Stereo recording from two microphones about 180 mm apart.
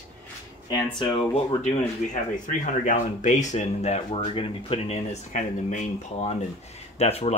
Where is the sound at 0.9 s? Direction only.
35° left (ahead or behind).